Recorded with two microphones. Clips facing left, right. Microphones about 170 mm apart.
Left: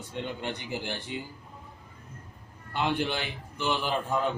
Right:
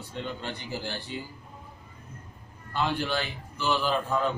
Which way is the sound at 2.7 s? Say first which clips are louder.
Even; 20° left (ahead or behind).